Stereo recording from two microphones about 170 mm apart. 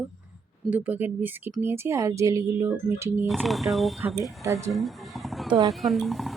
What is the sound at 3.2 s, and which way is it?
Speech, centre (ahead or behind).